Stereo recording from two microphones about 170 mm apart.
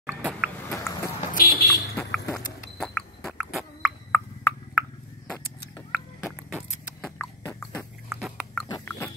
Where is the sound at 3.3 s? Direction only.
Centre (ahead or behind).